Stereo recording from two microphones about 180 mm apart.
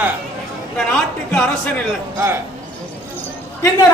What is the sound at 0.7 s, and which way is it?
Speech, 5° left (ahead or behind).